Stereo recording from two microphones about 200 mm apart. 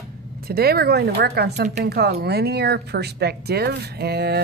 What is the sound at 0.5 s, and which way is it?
Speech, 50° right (ahead or behind).